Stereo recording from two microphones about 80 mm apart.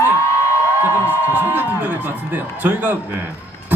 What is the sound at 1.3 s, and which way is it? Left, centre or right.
Speech, right.